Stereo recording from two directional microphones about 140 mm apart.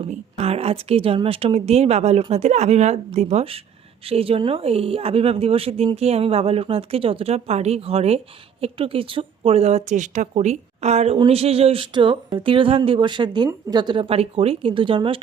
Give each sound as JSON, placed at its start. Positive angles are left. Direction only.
{"t": 0.1, "sound": "speech", "side_deg": -45}